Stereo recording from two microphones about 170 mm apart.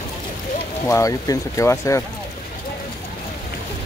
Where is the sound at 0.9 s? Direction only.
20° left (ahead or behind).